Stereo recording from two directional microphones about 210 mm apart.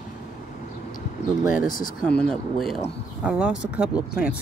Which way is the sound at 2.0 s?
5° left (ahead or behind).